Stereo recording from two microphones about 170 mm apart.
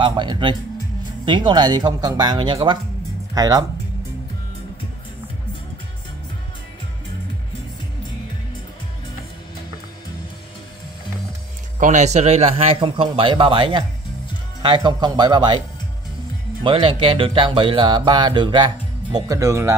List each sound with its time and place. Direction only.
0.0 s speech: 25° right (ahead or behind)
11.8 s a man's voice: 45° right (ahead or behind); by 15.6 s 25° right (ahead or behind)
16.6 s speech: 30° right (ahead or behind)